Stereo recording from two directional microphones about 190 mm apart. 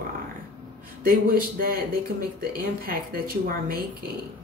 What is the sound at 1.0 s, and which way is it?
A woman's voice, 50° right (ahead or behind).